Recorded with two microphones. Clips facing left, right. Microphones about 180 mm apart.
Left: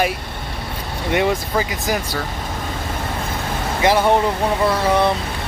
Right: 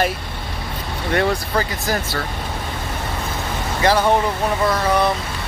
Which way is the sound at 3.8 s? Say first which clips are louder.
Left 1 dB; 20° left (ahead or behind).